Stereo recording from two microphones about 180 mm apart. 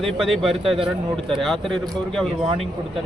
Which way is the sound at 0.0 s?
Centre (ahead or behind).